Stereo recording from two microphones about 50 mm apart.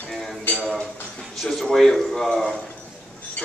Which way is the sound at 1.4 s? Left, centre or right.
Centre.